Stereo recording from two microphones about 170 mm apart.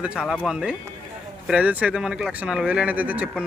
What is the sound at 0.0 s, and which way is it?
Speech, 5° right (ahead or behind).